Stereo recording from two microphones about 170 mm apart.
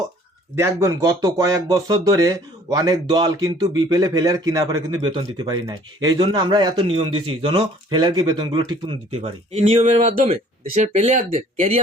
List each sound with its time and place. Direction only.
0.5 s speech: 15° right (ahead or behind); by 11.8 s 40° right (ahead or behind)